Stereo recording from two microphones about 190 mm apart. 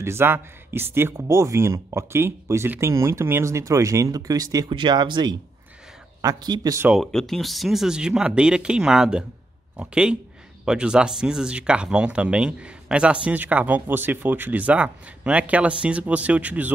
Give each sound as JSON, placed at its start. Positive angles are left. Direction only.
{"t": 0.0, "sound": "speech", "side_deg": -10}
{"t": 6.9, "sound": "speech", "side_deg": 0}